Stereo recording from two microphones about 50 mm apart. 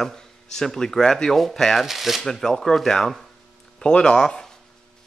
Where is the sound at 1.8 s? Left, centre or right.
Centre.